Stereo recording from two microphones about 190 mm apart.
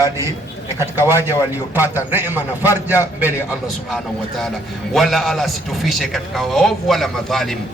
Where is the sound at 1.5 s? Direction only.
10° right (ahead or behind).